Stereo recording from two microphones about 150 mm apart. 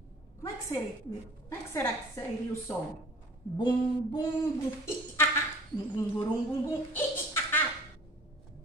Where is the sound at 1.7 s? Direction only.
20° left (ahead or behind).